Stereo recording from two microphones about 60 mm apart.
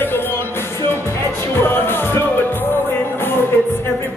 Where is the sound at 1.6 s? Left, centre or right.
Left.